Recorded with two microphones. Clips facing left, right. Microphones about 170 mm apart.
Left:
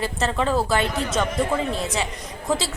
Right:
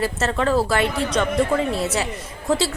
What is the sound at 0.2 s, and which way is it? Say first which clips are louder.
A woman's voice: right 1 dB; centre (ahead or behind).